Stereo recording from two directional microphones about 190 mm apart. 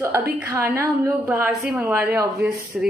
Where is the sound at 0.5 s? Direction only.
15° right (ahead or behind).